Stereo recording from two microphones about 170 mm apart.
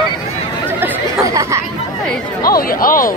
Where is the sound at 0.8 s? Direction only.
20° right (ahead or behind).